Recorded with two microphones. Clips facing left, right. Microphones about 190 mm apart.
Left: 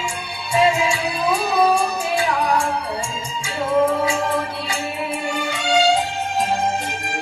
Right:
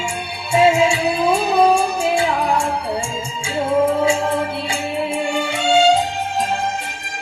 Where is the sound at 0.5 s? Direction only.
30° right (ahead or behind).